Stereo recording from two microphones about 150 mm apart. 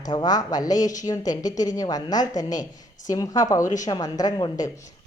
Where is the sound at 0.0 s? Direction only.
30° left (ahead or behind).